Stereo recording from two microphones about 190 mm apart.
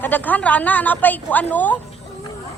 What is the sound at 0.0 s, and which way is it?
A woman's voice, 10° left (ahead or behind).